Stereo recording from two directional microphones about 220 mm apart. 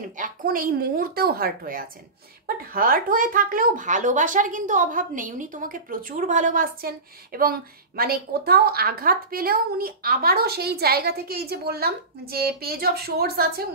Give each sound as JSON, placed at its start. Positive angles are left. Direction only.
{"t": 0.2, "sound": "a child's voice", "side_deg": -40}